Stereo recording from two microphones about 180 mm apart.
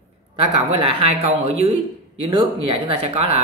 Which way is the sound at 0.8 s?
30° right (ahead or behind).